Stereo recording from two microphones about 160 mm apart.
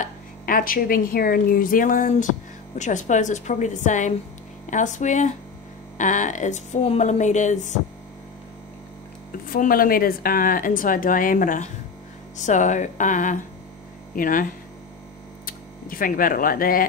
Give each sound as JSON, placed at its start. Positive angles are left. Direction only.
{"t": 0.0, "sound": "speech", "side_deg": 60}
{"t": 9.5, "sound": "speech", "side_deg": 65}